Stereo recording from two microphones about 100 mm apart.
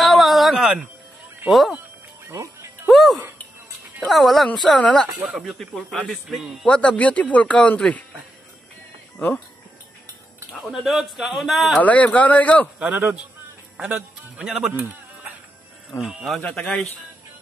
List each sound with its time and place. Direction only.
0.0 s a sound: centre (ahead or behind)
2.2 s music: 30° right (ahead or behind)
2.9 s music: centre (ahead or behind)
4.0 s a man's voice: centre (ahead or behind)
6.7 s speech: 10° left (ahead or behind)
10.6 s a man's voice: centre (ahead or behind)
11.8 s speech: 15° left (ahead or behind)
12.7 s a man's voice: 15° right (ahead or behind)
16.3 s speech: 10° left (ahead or behind)